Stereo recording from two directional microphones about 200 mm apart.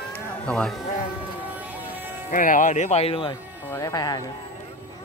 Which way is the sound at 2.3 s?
40° left (ahead or behind).